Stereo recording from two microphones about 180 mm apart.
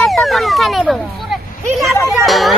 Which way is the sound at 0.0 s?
Centre (ahead or behind).